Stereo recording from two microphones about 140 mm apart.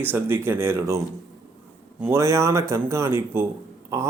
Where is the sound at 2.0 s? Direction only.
20° right (ahead or behind).